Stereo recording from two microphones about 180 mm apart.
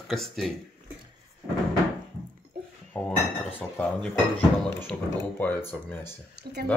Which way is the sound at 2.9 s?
5° left (ahead or behind).